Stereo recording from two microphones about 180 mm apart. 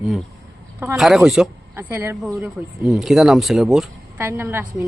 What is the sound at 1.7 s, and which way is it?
Speech, 15° right (ahead or behind).